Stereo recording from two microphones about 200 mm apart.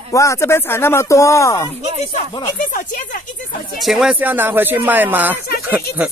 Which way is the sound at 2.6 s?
40° left (ahead or behind).